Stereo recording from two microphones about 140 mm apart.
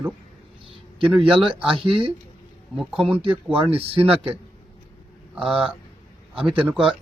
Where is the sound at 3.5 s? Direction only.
40° right (ahead or behind).